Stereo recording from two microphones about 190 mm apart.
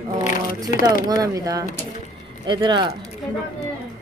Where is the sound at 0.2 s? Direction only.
45° left (ahead or behind).